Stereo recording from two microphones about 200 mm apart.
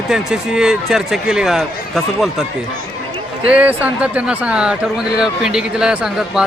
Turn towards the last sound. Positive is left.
turn(degrees=-5)  # may be behind; listen again after turning